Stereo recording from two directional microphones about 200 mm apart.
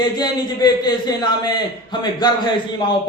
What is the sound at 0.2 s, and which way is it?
A man's voice, 20° left (ahead or behind).